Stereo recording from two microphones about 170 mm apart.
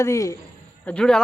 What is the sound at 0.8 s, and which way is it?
Speech, 5° left (ahead or behind).